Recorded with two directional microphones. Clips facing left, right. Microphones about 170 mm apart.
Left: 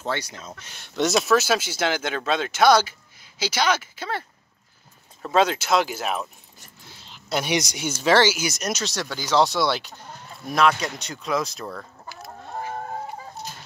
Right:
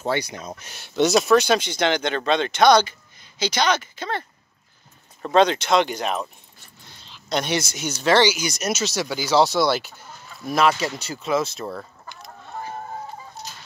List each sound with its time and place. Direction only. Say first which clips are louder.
0.0 s speech: right 4 dB; 15° right (ahead or behind)
0.7 s speech: right 4 dB; 5° right (ahead or behind)
5.2 s speech: right 3 dB; 5° left (ahead or behind)
6.8 s a sound: even; 5° left (ahead or behind)
7.5 s speech: even; 15° left (ahead or behind); by 12.3 s centre (ahead or behind)